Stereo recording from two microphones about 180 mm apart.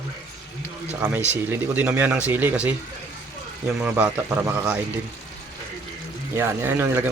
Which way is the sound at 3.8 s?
10° right (ahead or behind).